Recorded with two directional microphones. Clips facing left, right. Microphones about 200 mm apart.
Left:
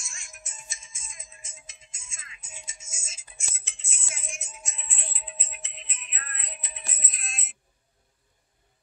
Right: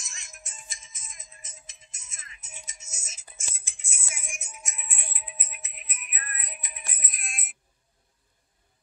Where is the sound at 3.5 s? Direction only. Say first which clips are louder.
Left 1 dB; 10° right (ahead or behind).